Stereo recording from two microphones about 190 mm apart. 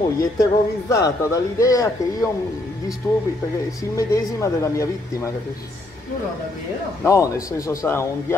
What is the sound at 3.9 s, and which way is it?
Speech, 15° left (ahead or behind).